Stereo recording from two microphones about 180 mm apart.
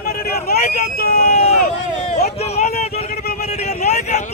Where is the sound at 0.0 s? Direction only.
60° left (ahead or behind).